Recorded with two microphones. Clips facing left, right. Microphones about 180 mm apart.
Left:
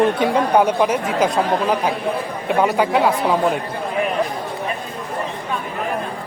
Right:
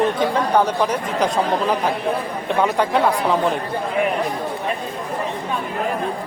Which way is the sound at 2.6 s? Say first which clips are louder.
Left 1 dB; 5° left (ahead or behind).